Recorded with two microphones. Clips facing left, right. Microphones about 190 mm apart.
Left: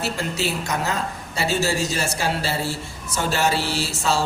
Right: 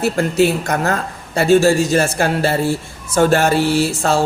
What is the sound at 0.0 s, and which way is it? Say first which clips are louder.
A man's voice: right 11 dB; 55° right (ahead or behind).